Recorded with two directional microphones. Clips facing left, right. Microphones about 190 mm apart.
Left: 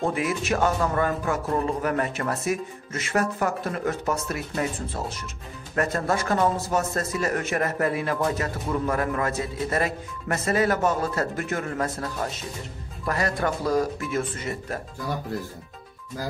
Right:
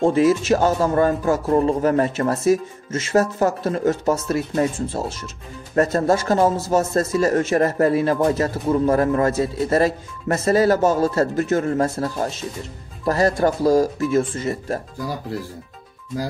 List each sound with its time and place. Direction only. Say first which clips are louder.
0.0 s speech: right 10 dB; 30° right (ahead or behind)